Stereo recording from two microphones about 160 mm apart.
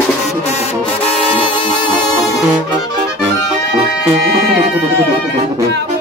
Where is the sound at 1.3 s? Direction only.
30° left (ahead or behind).